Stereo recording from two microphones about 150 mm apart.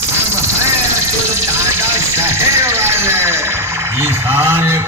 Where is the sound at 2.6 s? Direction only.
20° right (ahead or behind).